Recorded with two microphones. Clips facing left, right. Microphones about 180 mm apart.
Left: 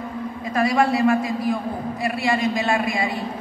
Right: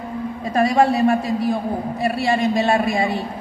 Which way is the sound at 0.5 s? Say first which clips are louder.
Right 3 dB; 35° right (ahead or behind).